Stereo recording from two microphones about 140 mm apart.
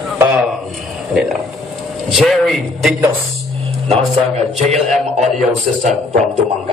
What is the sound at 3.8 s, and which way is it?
Speech, 50° right (ahead or behind).